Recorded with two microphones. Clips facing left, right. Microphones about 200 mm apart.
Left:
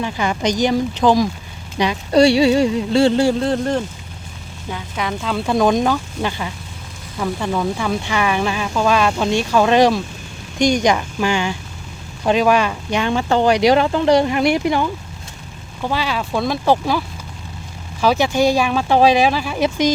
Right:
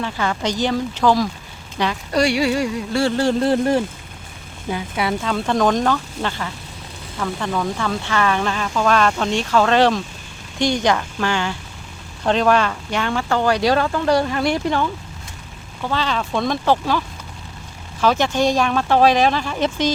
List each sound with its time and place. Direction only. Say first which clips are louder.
0.0 s speech: left 2 dB; 15° left (ahead or behind)
3.4 s speech: right 2 dB; 5° right (ahead or behind)
5.3 s speech: left 3 dB; 10° left (ahead or behind)
15.9 s speech: left 1 dB; 10° left (ahead or behind)
18.0 s speech: left 2 dB; 10° left (ahead or behind)